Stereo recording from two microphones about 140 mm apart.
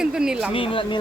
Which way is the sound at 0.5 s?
40° left (ahead or behind).